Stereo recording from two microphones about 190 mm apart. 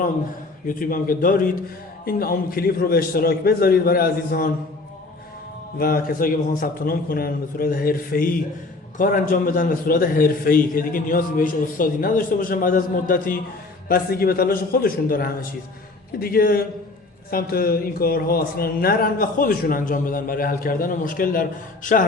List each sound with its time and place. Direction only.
0.7 s a man's voice: 45° left (ahead or behind)
5.8 s a man's voice: 50° left (ahead or behind)